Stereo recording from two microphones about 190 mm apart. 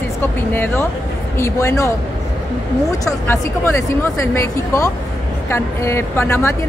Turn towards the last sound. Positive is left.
turn(degrees=15)  # may be behind; listen again after turning